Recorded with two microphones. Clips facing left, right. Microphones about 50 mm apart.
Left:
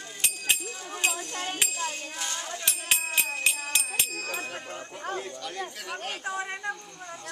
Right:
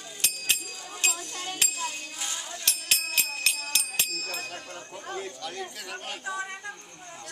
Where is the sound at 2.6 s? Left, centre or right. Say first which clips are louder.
Left 1 dB; centre.